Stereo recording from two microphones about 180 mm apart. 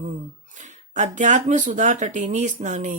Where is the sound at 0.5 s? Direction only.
40° right (ahead or behind).